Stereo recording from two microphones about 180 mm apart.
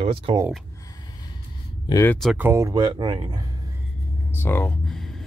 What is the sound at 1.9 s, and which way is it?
Speech, 15° left (ahead or behind).